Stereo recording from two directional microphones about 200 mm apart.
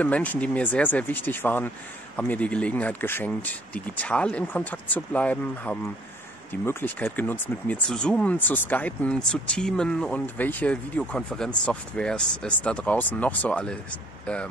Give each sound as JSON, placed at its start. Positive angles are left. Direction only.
{"t": 0.0, "sound": "speech", "side_deg": 5}